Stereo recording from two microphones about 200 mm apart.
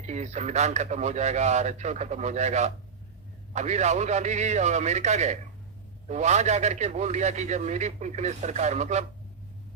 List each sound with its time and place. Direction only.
0.1 s a man's voice: 35° right (ahead or behind)